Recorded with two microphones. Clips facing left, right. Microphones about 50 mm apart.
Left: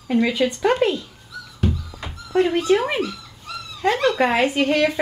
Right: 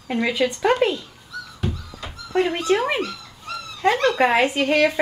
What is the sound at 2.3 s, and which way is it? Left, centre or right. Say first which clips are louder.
Speech: left 3 dB; centre.